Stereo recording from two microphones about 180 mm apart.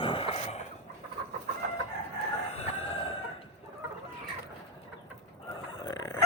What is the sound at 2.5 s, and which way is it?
Chicken, 35° left (ahead or behind).